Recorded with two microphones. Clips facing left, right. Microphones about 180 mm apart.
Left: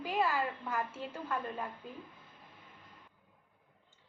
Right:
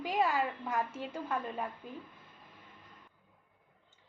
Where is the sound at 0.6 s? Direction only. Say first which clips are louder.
Right 2 dB; 20° right (ahead or behind).